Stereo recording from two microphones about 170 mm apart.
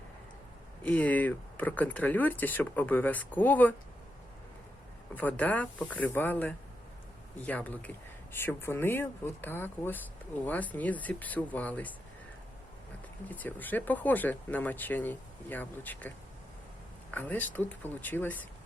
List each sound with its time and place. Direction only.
0.8 s speech: 10° left (ahead or behind)
5.1 s speech: 10° left (ahead or behind)
13.2 s speech: 10° left (ahead or behind)
17.2 s speech: 10° left (ahead or behind)